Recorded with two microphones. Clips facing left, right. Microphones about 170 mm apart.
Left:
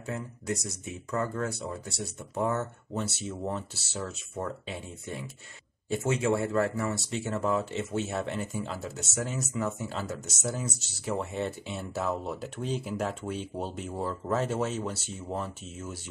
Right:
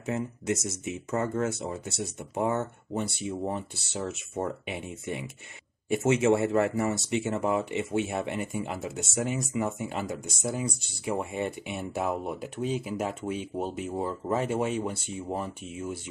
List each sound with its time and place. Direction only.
0.0 s speech: 20° right (ahead or behind)